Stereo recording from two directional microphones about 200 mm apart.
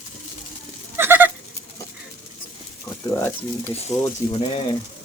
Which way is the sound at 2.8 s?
10° left (ahead or behind).